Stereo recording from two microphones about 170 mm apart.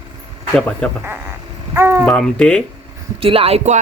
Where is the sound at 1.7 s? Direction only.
15° right (ahead or behind).